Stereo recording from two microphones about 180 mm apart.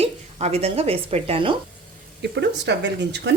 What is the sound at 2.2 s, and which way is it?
Speech, 70° right (ahead or behind).